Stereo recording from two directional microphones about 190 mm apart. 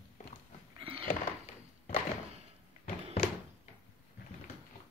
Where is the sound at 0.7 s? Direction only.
30° right (ahead or behind).